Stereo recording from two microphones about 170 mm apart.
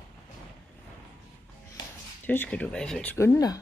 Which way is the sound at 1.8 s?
25° left (ahead or behind).